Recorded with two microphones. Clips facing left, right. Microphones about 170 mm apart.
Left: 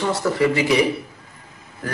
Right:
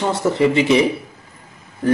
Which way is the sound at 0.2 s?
25° right (ahead or behind).